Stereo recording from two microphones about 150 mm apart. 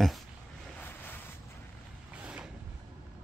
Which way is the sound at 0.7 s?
10° left (ahead or behind).